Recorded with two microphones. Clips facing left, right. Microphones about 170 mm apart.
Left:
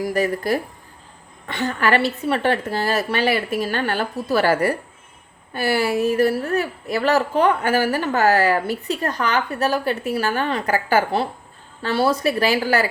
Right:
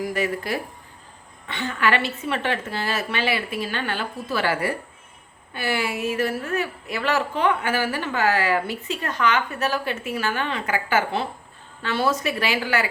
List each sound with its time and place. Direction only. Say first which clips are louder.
0.0 s a woman's voice: left 4 dB; 40° left (ahead or behind)